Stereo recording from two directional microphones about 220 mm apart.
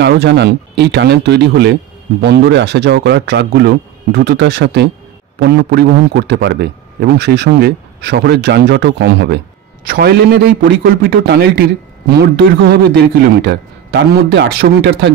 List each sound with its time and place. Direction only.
0.0 s a man's voice: 50° right (ahead or behind)